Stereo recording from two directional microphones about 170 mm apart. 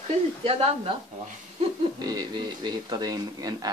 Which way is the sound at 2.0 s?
25° right (ahead or behind).